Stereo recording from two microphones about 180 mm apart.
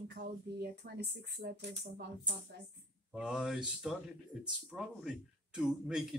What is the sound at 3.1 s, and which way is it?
A man's voice, 5° right (ahead or behind).